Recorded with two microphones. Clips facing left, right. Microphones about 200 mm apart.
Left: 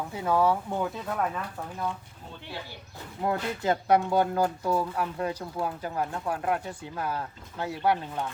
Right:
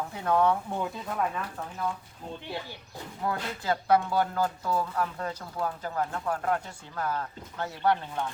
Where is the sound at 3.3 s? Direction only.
20° left (ahead or behind).